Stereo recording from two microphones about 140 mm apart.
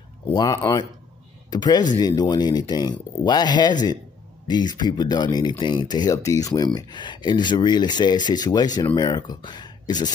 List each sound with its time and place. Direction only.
0.3 s speech: 25° left (ahead or behind)